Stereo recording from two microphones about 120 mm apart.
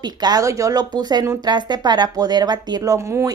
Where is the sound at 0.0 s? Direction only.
35° right (ahead or behind).